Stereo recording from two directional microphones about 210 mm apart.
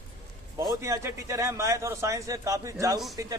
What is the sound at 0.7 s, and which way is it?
A man's voice, 15° right (ahead or behind).